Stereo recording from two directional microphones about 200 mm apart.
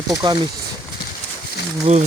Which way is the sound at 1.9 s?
35° right (ahead or behind).